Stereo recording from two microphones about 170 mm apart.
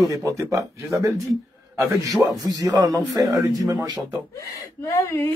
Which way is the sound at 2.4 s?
20° right (ahead or behind).